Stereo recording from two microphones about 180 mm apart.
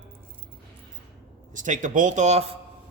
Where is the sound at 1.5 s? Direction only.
45° right (ahead or behind).